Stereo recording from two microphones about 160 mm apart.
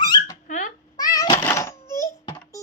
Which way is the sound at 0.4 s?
50° left (ahead or behind).